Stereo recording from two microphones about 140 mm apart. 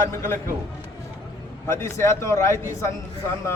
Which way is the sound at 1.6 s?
20° left (ahead or behind).